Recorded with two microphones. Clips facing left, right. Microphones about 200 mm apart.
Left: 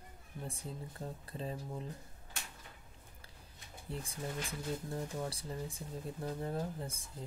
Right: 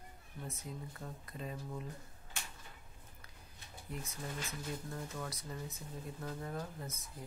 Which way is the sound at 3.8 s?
30° left (ahead or behind).